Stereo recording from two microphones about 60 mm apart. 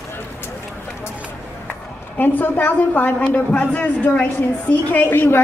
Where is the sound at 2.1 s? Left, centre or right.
Left.